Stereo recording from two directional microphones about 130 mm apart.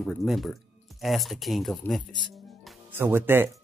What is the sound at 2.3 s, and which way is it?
Music, centre (ahead or behind).